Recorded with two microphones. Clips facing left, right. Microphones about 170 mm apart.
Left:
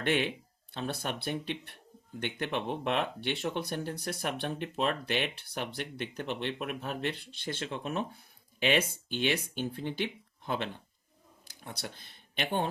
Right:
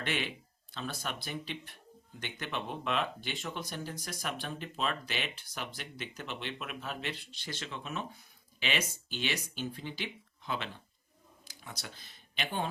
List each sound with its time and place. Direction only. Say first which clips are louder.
0.0 s speech: left 7 dB; 55° left (ahead or behind)